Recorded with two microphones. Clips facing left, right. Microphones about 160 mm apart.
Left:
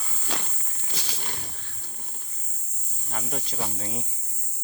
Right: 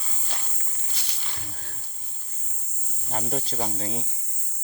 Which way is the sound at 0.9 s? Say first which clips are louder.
Left 9 dB; 90° left.